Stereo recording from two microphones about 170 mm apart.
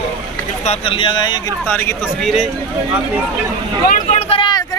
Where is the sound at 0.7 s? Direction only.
30° left (ahead or behind).